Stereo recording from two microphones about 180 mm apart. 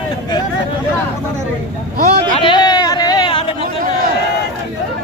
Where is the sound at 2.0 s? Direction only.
55° right (ahead or behind).